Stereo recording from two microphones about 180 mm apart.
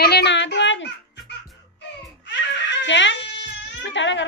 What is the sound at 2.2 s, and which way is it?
Giggle, 80° left.